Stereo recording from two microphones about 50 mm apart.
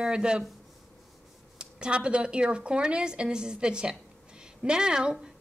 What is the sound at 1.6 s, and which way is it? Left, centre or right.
A woman's voice, centre.